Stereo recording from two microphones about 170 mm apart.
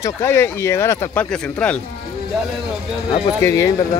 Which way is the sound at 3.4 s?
15° left (ahead or behind).